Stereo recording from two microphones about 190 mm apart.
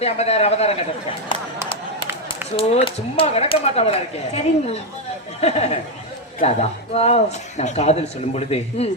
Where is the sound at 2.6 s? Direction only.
30° left (ahead or behind).